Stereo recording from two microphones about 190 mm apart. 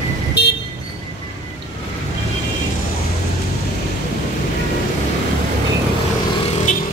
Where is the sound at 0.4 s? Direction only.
60° left (ahead or behind).